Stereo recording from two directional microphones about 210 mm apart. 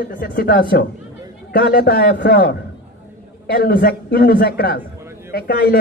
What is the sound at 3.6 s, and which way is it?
A man's voice, 50° left (ahead or behind).